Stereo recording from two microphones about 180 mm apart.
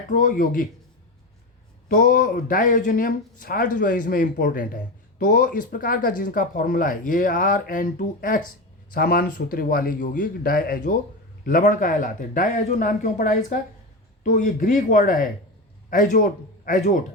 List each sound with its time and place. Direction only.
0.1 s speech: 50° left (ahead or behind)
1.9 s a man's voice: 50° left (ahead or behind)